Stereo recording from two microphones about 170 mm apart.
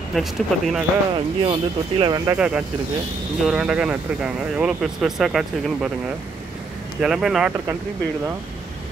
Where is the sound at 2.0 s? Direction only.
25° right (ahead or behind).